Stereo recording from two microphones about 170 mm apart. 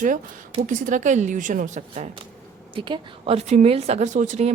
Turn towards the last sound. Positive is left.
turn(degrees=-45)  # may be behind; listen again after turning